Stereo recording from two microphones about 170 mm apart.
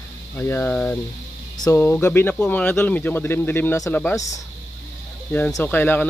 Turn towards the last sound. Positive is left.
turn(degrees=10)  # may be behind; listen again after turning